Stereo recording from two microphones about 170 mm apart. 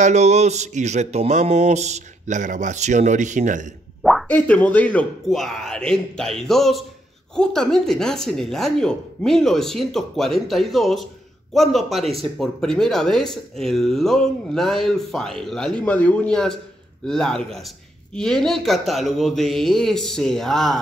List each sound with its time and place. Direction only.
0.0 s speech: 40° right (ahead or behind)
4.0 s speech: centre (ahead or behind)